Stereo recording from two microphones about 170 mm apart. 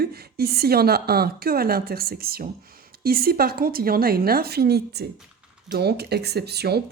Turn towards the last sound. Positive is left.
turn(degrees=-70)  # may be behind; listen again after turning